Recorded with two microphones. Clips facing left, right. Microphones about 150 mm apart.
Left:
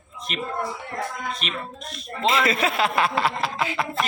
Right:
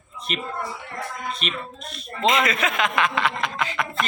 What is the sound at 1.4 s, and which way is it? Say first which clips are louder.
Speech: right 2 dB; centre (ahead or behind).